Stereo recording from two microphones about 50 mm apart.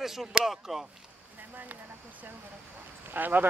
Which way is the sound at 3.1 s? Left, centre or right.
Right.